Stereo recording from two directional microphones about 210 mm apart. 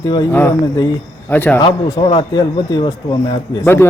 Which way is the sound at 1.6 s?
25° left (ahead or behind).